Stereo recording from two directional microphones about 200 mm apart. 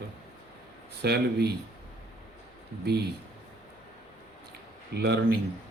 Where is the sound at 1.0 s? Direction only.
55° right (ahead or behind).